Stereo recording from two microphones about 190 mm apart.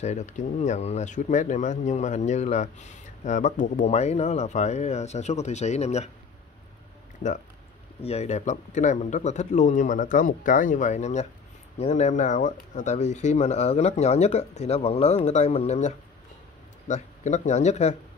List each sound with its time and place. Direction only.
0.0 s speech: 40° left (ahead or behind)
8.0 s speech: 35° left (ahead or behind)